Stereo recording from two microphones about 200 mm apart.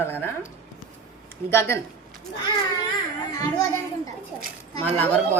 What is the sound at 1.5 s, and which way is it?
Speech, 10° left (ahead or behind).